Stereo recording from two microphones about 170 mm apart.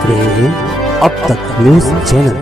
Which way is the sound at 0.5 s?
Centre (ahead or behind).